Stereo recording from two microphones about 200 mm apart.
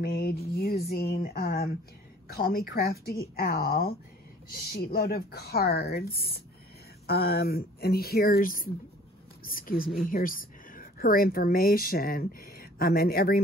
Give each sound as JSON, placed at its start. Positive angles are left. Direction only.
{"t": 0.0, "sound": "a woman's voice", "side_deg": 50}